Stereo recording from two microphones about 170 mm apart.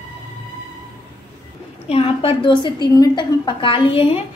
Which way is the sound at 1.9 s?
35° left (ahead or behind).